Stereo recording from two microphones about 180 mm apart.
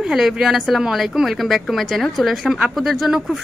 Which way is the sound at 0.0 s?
5° right (ahead or behind).